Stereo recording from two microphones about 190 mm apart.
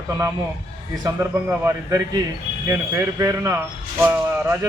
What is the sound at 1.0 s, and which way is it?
Speech, 15° right (ahead or behind).